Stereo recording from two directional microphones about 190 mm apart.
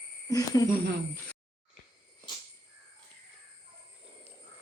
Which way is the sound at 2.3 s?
25° left (ahead or behind).